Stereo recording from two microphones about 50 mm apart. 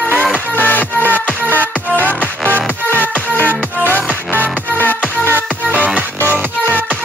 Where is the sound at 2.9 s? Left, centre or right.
Left.